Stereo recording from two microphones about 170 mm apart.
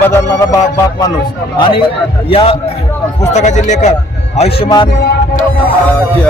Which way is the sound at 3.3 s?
45° left (ahead or behind).